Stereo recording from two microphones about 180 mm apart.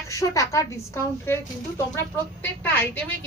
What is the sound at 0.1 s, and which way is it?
A woman's voice, 15° left (ahead or behind).